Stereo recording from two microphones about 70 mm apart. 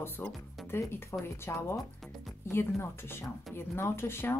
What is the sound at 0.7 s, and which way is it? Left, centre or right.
Speech, left.